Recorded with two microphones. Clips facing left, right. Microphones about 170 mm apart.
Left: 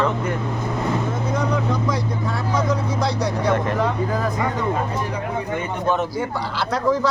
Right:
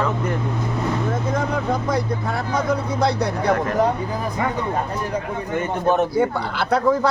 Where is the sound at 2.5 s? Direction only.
60° right (ahead or behind).